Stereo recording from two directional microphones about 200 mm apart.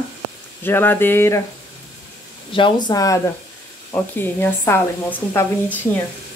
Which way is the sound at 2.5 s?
25° left (ahead or behind).